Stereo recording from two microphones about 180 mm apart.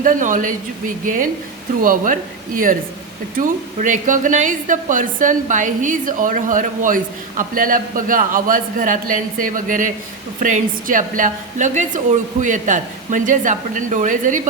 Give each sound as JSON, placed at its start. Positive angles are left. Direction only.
{"t": 0.0, "sound": "speech", "side_deg": -45}
{"t": 3.3, "sound": "speech", "side_deg": -45}